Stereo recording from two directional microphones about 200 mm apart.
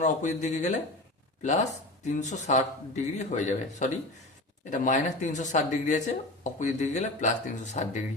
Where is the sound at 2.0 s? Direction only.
35° left (ahead or behind).